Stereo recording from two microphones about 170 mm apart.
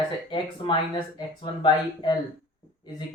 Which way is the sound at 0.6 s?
25° left (ahead or behind).